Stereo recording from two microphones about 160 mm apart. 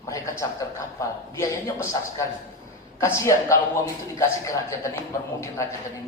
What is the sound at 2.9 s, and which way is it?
Speech, 20° left (ahead or behind).